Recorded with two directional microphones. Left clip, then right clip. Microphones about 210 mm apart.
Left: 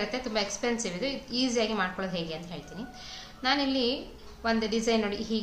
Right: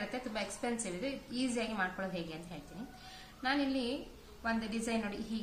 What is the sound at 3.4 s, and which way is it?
A woman's voice, 20° left (ahead or behind).